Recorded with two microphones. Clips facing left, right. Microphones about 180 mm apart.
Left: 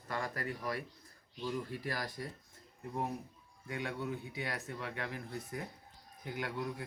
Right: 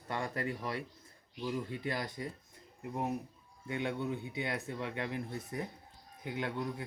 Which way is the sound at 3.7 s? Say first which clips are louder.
Right 3 dB; 25° right (ahead or behind).